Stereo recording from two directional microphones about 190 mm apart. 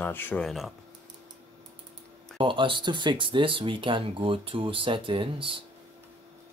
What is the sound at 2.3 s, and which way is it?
Speech, 25° right (ahead or behind).